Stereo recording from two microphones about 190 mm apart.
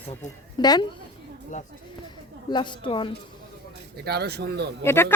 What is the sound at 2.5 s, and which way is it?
Speech, 25° left (ahead or behind).